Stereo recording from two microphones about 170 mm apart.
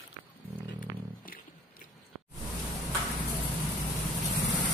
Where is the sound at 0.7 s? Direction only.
55° left (ahead or behind).